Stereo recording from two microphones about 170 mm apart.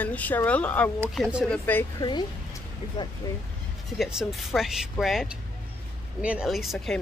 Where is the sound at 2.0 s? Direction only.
20° left (ahead or behind).